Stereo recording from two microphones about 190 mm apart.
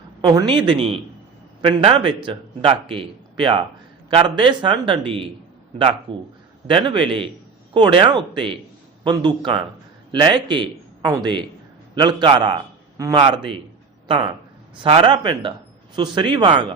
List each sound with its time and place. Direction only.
0.3 s a man's voice: 25° right (ahead or behind)
14.8 s a man's voice: 25° right (ahead or behind)